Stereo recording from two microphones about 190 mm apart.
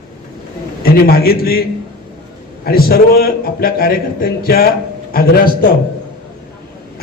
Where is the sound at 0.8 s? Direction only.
50° left (ahead or behind).